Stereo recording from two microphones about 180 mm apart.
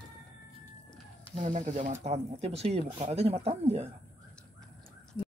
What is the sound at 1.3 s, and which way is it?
Speech, 40° right (ahead or behind).